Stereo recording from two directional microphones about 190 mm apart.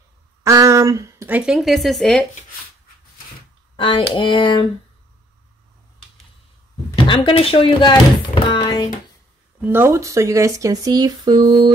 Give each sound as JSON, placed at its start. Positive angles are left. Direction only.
{"t": 0.4, "sound": "speech", "side_deg": -15}
{"t": 3.7, "sound": "speech", "side_deg": 25}
{"t": 7.0, "sound": "speech", "side_deg": 25}
{"t": 9.6, "sound": "speech", "side_deg": -10}